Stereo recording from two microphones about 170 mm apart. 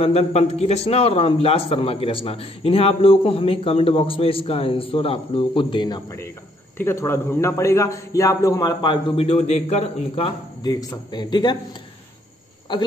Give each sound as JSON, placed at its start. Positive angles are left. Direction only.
{"t": 0.0, "sound": "a man's voice", "side_deg": 35}
{"t": 9.1, "sound": "a man's voice", "side_deg": 35}
{"t": 12.7, "sound": "a man's voice", "side_deg": 30}